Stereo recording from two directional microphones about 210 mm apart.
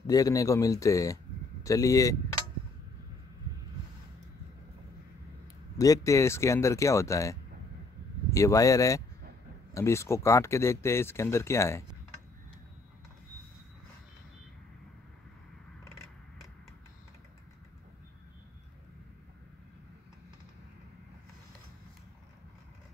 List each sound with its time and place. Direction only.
0.0 s speech: 15° left (ahead or behind)
5.8 s speech: 15° left (ahead or behind)